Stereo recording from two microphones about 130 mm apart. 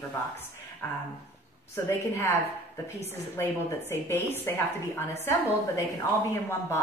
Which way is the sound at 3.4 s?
20° left (ahead or behind).